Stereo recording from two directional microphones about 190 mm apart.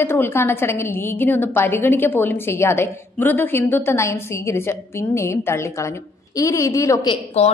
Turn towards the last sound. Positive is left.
turn(degrees=35)  # may be behind; listen again after turning